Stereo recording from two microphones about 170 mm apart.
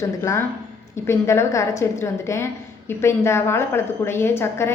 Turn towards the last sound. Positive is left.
turn(degrees=15)  # may be behind; listen again after turning